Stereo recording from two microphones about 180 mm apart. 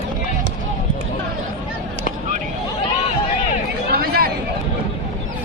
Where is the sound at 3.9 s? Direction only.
60° right (ahead or behind).